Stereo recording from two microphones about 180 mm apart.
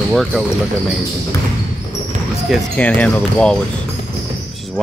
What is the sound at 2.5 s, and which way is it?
Speech, 10° left (ahead or behind).